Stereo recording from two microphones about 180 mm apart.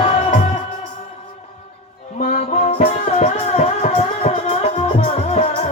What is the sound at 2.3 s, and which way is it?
Music, 40° left (ahead or behind).